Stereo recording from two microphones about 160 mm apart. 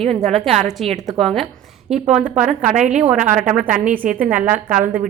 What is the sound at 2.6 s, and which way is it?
Speech, 55° right (ahead or behind).